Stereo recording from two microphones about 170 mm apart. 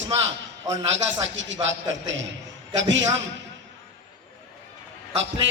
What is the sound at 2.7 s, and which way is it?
Speech, 90° right.